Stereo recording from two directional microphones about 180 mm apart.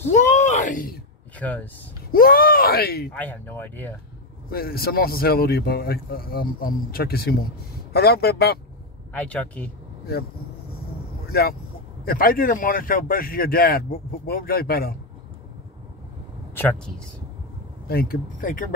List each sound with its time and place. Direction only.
0.1 s a sound: 45° left (ahead or behind)
1.4 s speech: 10° left (ahead or behind)
2.1 s speech: 55° left (ahead or behind)
3.1 s speech: 10° left (ahead or behind)
4.5 s speech: 60° left (ahead or behind)
9.1 s speech: 10° left (ahead or behind)
12.0 s speech: 55° left (ahead or behind)
16.5 s speech: 5° left (ahead or behind)
17.8 s speech: 55° left (ahead or behind)